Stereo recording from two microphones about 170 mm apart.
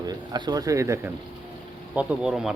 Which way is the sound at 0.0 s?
25° right (ahead or behind).